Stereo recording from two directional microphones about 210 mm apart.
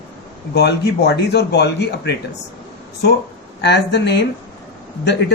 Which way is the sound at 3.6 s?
55° left (ahead or behind).